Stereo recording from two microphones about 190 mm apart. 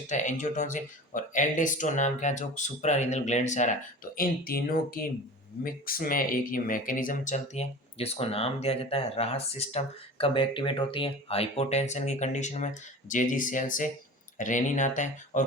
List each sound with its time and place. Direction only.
0.1 s speech: 40° left (ahead or behind)